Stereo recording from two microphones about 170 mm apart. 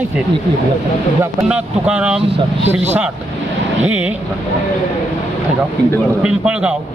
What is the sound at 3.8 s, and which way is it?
Speech, 10° right (ahead or behind).